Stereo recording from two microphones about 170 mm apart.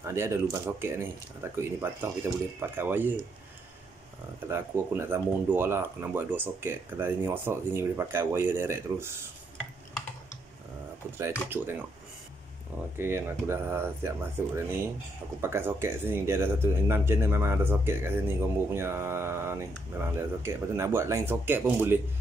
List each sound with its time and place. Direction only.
0.0 s speech: 15° right (ahead or behind)
4.5 s speech: 15° right (ahead or behind)
11.4 s speech: 10° right (ahead or behind)
12.9 s speech: 15° right (ahead or behind)